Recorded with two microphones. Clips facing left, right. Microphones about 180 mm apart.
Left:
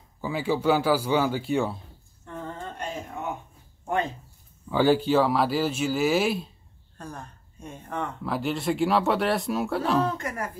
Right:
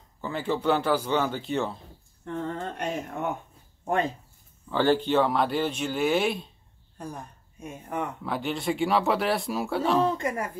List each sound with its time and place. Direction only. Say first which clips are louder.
0.2 s speech: left 2 dB; 5° left (ahead or behind)
2.2 s speech: right 5 dB; 65° right (ahead or behind)
4.6 s speech: left 2 dB; 10° left (ahead or behind)
7.0 s speech: right 1 dB; 10° right (ahead or behind)
8.2 s speech: left 2 dB; centre (ahead or behind)
10.1 s speech: right 3 dB; 15° right (ahead or behind)